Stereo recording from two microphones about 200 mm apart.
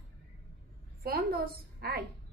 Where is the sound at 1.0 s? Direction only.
50° right (ahead or behind).